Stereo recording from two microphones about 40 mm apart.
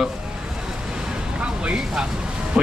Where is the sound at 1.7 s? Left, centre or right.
Centre.